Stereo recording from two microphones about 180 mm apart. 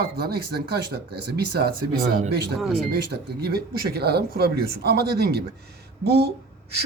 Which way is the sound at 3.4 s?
60° right (ahead or behind).